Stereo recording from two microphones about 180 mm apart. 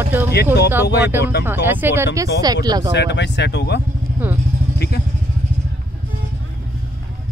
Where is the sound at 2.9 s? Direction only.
70° left (ahead or behind).